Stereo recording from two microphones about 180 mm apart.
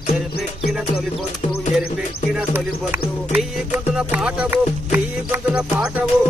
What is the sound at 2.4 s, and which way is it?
Music, 5° right (ahead or behind).